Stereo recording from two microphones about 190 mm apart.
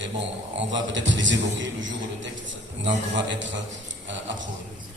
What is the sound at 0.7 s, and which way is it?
A man's voice, 75° right (ahead or behind).